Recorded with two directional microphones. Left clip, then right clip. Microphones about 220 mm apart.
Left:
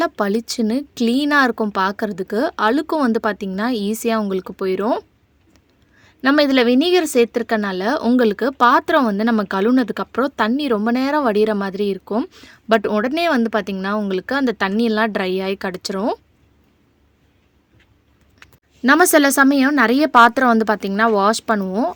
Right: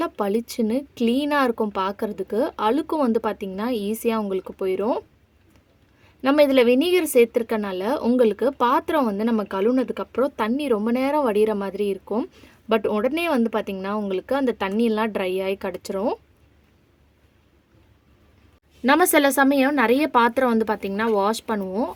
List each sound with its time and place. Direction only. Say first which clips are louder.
0.0 s speech: left 4 dB; 35° left (ahead or behind)
18.8 s speech: left 4 dB; 35° left (ahead or behind)